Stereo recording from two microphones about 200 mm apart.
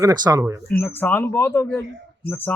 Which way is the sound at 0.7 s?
10° left (ahead or behind).